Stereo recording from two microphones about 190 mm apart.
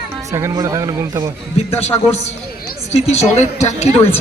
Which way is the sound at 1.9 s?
20° left (ahead or behind).